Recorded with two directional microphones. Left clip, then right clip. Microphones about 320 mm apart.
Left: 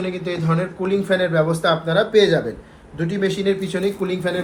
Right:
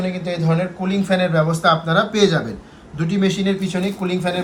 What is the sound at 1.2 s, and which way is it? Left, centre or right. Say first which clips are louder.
Speech: right 1 dB; right.